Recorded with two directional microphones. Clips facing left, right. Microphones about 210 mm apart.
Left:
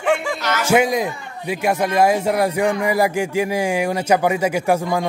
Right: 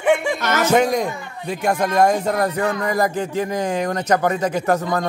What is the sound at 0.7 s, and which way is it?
A man's voice, 5° left (ahead or behind).